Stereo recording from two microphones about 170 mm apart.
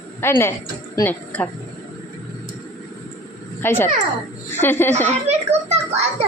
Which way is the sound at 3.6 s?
15° left (ahead or behind).